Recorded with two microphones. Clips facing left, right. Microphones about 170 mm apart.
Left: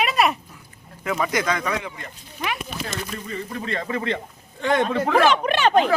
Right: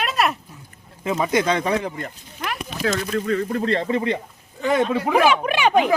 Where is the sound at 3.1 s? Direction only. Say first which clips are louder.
Right 9 dB; 65° right (ahead or behind).